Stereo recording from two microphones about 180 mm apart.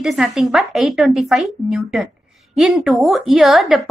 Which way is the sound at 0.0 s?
Centre (ahead or behind).